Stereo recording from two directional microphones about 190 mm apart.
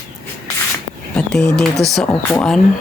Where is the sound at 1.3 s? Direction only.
5° left (ahead or behind).